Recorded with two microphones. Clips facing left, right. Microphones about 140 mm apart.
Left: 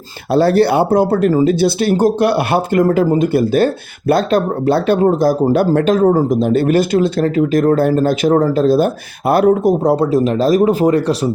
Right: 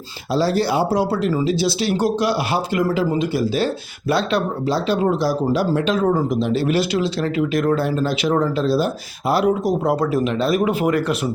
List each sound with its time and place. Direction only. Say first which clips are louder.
0.3 s speech: left 7 dB; 60° left (ahead or behind)
9.8 s speech: left 6 dB; 30° left (ahead or behind)